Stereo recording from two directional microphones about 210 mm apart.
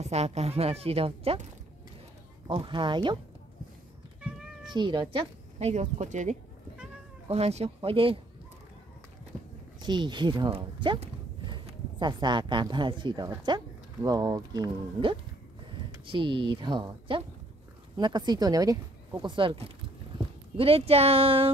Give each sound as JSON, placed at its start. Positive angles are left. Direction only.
{"t": 0.0, "sound": "speech", "side_deg": -30}
{"t": 4.2, "sound": "cat", "side_deg": 0}
{"t": 4.7, "sound": "speech", "side_deg": -20}
{"t": 9.8, "sound": "speech", "side_deg": -20}